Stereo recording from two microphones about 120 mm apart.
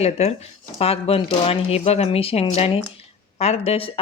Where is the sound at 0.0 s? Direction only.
60° left (ahead or behind).